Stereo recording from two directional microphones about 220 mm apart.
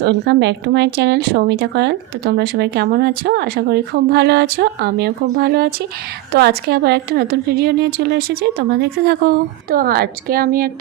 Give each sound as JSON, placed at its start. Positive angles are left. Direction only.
{"t": 0.0, "sound": "speech", "side_deg": -50}